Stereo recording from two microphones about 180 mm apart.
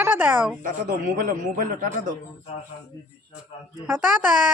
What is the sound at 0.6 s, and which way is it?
A man's voice, 50° right (ahead or behind).